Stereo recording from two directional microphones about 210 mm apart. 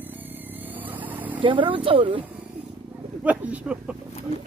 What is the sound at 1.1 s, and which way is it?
Vehicle, 10° right (ahead or behind).